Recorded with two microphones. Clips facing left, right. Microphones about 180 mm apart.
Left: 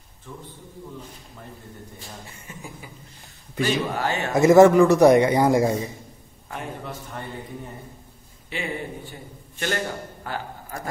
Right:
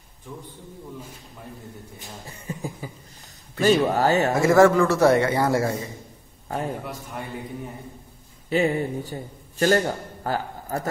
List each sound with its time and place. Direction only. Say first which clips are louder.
2.2 s a man's voice: right 7 dB; 35° right (ahead or behind)
4.3 s a man's voice: left 5 dB; 20° left (ahead or behind)
6.8 s a man's voice: right 1 dB; 10° right (ahead or behind)
8.5 s a man's voice: right 9 dB; 40° right (ahead or behind)